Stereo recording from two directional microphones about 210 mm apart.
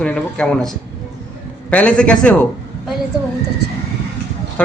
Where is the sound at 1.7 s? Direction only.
5° left (ahead or behind).